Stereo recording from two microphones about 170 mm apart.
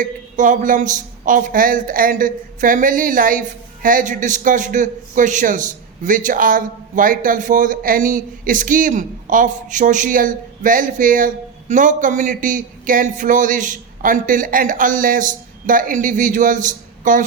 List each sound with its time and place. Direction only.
0.0 s speech: 50° right (ahead or behind)